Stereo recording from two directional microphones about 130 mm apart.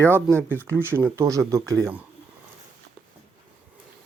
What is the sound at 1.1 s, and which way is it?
Speech, 25° right (ahead or behind).